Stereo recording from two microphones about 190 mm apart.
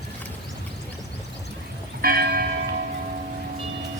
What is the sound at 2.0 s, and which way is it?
Church bell, 50° right (ahead or behind).